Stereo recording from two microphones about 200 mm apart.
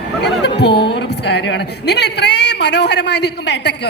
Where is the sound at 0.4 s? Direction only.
55° left (ahead or behind).